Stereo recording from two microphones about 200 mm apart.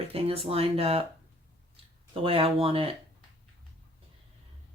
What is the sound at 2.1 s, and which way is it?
Speech, 30° right (ahead or behind).